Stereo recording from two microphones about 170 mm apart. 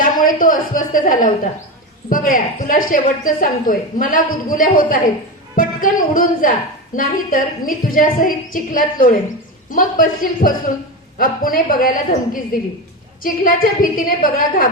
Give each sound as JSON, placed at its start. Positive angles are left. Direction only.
{"t": 0.0, "sound": "a woman's voice", "side_deg": 55}